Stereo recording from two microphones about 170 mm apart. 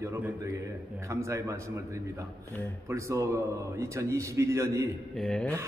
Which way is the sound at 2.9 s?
20° right (ahead or behind).